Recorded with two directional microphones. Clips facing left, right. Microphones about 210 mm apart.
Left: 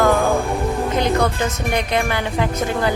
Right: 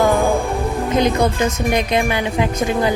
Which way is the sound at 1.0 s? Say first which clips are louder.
Right 4 dB; 20° right (ahead or behind).